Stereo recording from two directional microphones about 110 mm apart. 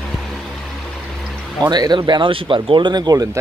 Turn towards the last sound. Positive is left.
turn(degrees=-40)  # may be behind; listen again after turning